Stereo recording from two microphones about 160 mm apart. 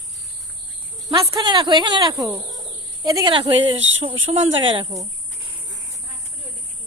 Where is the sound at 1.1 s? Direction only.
25° right (ahead or behind).